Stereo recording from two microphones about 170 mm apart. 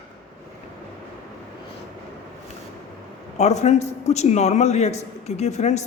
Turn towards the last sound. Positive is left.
turn(degrees=40)  # may be behind; listen again after turning